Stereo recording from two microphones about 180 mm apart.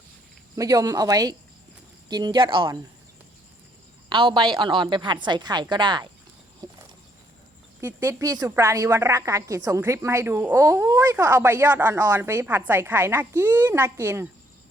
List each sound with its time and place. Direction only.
0.5 s speech: 20° right (ahead or behind)
4.1 s speech: 30° right (ahead or behind)
6.6 s a sound: 20° right (ahead or behind)
7.8 s a woman's voice: 15° right (ahead or behind)